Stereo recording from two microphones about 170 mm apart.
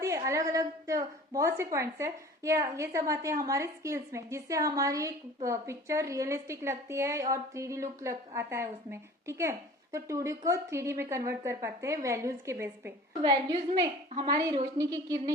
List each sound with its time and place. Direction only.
0.0 s a woman's voice: 20° right (ahead or behind)
13.2 s a woman's voice: 30° right (ahead or behind)